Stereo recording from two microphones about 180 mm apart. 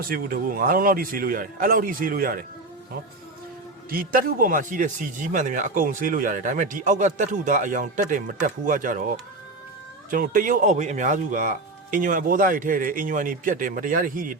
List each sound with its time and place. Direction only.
0.0 s speech: 55° right (ahead or behind)
3.8 s speech: 55° right (ahead or behind)